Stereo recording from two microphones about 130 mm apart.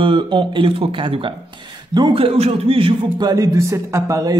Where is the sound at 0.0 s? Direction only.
40° right (ahead or behind).